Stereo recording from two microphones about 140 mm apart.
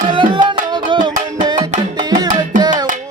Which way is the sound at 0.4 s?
35° right (ahead or behind).